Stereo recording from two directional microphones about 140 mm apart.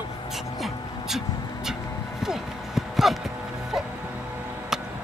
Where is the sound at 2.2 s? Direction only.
Centre (ahead or behind).